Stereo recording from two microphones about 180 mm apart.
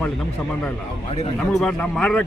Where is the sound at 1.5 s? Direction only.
Centre (ahead or behind).